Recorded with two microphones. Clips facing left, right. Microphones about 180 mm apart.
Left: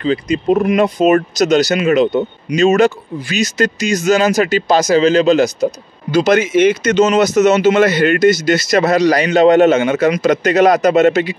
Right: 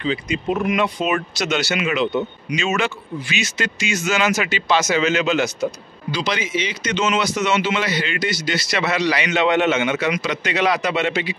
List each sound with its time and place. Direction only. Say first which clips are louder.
0.0 s speech: left 7 dB; 40° left (ahead or behind)
6.1 s speech: left 12 dB; 50° left (ahead or behind)